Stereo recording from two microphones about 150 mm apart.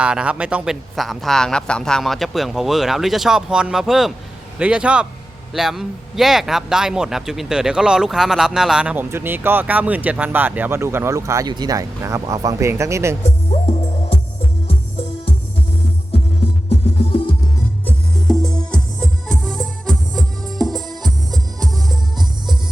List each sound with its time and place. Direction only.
0.0 s speech: 5° right (ahead or behind)
16.6 s music: 40° left (ahead or behind)
17.8 s music: 5° left (ahead or behind)
21.0 s music: 25° right (ahead or behind)